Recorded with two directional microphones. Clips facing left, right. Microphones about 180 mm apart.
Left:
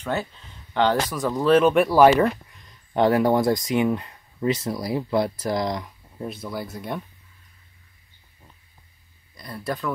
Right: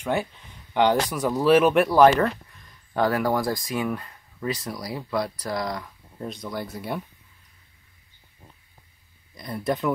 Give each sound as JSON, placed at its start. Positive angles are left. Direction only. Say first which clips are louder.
{"t": 0.0, "sound": "speech", "louder": "right 1 dB", "side_deg": -15}
{"t": 2.9, "sound": "speech", "louder": "left 4 dB", "side_deg": 25}
{"t": 6.1, "sound": "speech", "louder": "left 1 dB", "side_deg": 5}
{"t": 9.3, "sound": "speech", "louder": "right 3 dB", "side_deg": -20}